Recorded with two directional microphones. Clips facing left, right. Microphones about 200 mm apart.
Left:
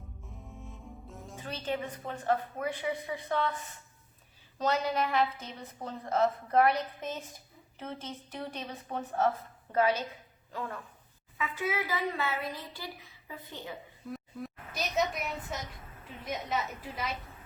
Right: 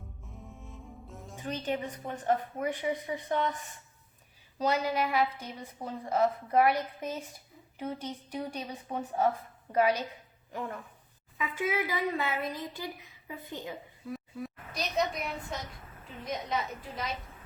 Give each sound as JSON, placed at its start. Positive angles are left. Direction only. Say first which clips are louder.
{"t": 0.3, "sound": "music", "louder": "even", "side_deg": 0}
{"t": 1.4, "sound": "a woman's voice", "louder": "right 2 dB", "side_deg": -15}
{"t": 4.5, "sound": "a woman's voice", "louder": "right 1 dB", "side_deg": -10}
{"t": 14.1, "sound": "a sound", "louder": "right 2 dB", "side_deg": 0}
{"t": 16.2, "sound": "a woman's voice", "louder": "even", "side_deg": 5}